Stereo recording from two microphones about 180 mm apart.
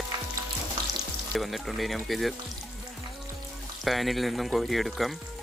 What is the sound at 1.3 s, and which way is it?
Speech, centre (ahead or behind).